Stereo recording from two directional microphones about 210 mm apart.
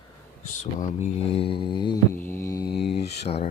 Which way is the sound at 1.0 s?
25° left (ahead or behind).